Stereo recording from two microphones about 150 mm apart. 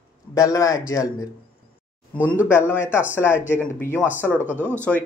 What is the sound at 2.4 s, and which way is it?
Speech, 15° left (ahead or behind).